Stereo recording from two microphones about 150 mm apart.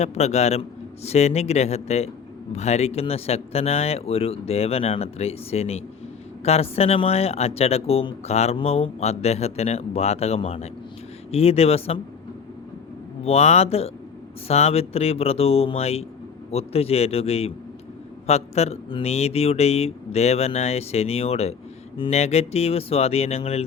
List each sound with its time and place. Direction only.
0.0 s speech: 45° left (ahead or behind)
13.2 s a man's voice: 45° left (ahead or behind)